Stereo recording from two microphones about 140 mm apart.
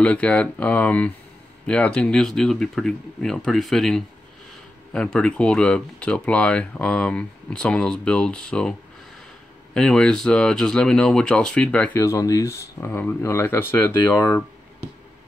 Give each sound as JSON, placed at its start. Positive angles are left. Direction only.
{"t": 0.0, "sound": "speech", "side_deg": 10}
{"t": 9.8, "sound": "speech", "side_deg": 5}
{"t": 12.0, "sound": "speech", "side_deg": 25}